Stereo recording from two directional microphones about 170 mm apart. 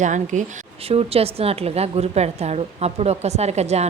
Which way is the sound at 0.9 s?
35° right (ahead or behind).